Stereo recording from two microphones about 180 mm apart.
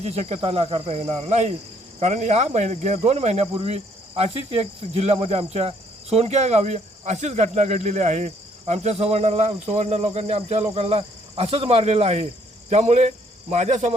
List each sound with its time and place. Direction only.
0.0 s speech: 35° right (ahead or behind)